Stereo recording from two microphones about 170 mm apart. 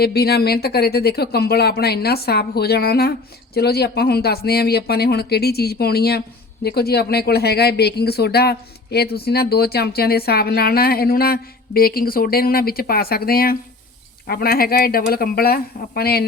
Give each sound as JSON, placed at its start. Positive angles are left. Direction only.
{"t": 0.0, "sound": "speech", "side_deg": 65}